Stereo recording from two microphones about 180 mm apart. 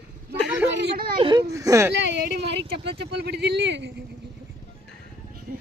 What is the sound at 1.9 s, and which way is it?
Speech, 80° right.